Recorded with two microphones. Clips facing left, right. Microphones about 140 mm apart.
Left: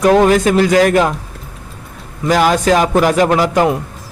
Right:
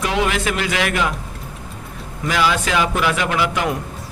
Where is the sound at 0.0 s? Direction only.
45° left (ahead or behind).